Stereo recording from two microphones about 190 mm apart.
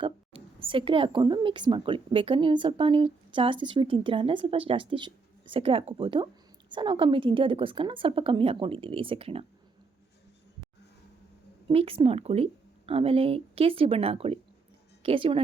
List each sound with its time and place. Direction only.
0.0 s a woman's voice: 30° right (ahead or behind)
11.7 s a woman's voice: 30° right (ahead or behind)